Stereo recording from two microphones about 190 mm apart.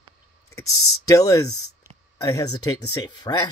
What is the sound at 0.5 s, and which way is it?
Speech, 20° left (ahead or behind).